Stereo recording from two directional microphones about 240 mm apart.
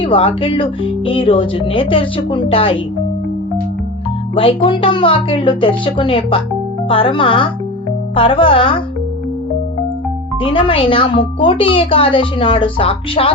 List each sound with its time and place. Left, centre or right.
0.0 s a woman's voice: left
4.4 s a woman's voice: left
10.4 s a woman's voice: left